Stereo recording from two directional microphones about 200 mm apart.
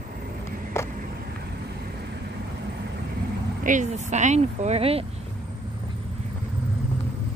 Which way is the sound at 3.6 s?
40° right (ahead or behind).